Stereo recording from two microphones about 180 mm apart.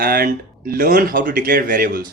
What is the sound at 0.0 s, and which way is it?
Speech, 55° right (ahead or behind).